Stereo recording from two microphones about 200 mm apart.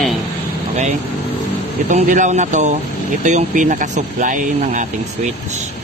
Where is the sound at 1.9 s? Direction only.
40° right (ahead or behind).